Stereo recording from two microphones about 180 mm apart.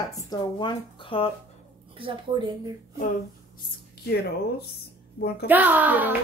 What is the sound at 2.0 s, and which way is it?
Speech, 25° right (ahead or behind).